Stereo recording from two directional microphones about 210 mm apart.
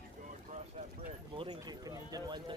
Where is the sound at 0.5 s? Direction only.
35° right (ahead or behind).